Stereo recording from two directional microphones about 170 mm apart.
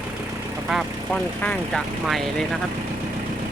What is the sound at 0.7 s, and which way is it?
Speech, 5° left (ahead or behind).